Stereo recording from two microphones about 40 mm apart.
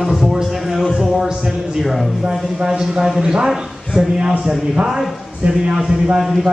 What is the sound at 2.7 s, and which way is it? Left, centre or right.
Speech, centre.